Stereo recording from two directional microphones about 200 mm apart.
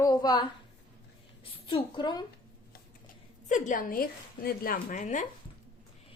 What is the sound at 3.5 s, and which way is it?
A woman's voice, 40° left (ahead or behind).